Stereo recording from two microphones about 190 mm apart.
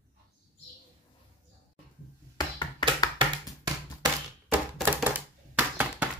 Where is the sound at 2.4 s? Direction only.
20° left (ahead or behind).